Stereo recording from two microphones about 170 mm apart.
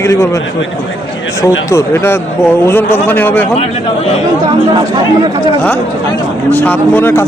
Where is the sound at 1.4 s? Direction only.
20° left (ahead or behind).